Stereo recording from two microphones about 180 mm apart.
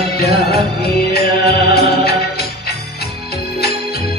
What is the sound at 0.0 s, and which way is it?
Music, 60° left (ahead or behind).